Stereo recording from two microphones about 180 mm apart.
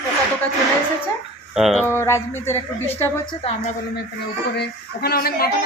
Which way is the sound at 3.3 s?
35° left (ahead or behind).